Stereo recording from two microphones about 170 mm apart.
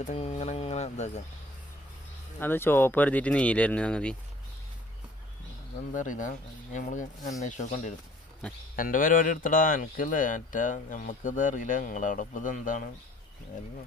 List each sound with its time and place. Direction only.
0.0 s speech: 40° left (ahead or behind)
2.4 s speech: 15° left (ahead or behind)
5.9 s speech: 50° left (ahead or behind)
8.4 s speech: 5° left (ahead or behind)
8.7 s speech: 55° left (ahead or behind)